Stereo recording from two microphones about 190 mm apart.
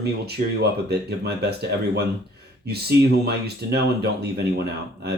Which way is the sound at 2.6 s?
55° right (ahead or behind).